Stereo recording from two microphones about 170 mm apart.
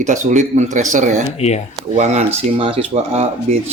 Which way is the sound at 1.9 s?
40° right (ahead or behind).